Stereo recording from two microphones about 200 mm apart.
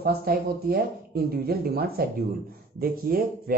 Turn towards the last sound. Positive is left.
turn(degrees=-45)  # may be behind; listen again after turning